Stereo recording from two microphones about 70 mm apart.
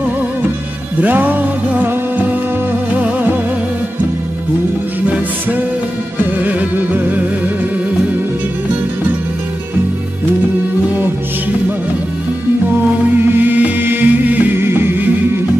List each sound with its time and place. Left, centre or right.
1.0 s music: right
5.0 s music: centre
13.4 s music: right